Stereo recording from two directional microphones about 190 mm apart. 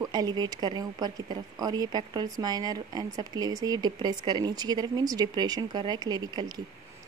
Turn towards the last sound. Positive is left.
turn(degrees=-20)  # may be behind; listen again after turning